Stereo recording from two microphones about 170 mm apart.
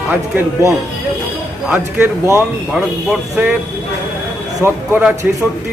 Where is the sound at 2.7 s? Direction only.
5° right (ahead or behind).